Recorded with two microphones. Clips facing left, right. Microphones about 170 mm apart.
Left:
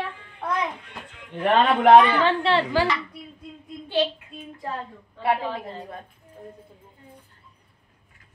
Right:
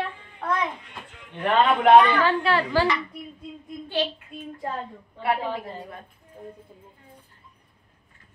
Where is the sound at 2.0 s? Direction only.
15° left (ahead or behind).